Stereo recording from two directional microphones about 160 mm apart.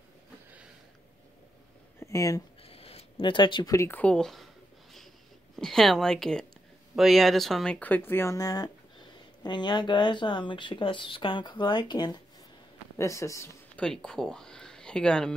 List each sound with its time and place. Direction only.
2.0 s speech: 20° left (ahead or behind)
2.6 s speech: 35° left (ahead or behind); by 4.5 s centre (ahead or behind)
5.6 s a woman's voice: centre (ahead or behind); by 13.5 s 20° left (ahead or behind)
13.7 s speech: 5° left (ahead or behind)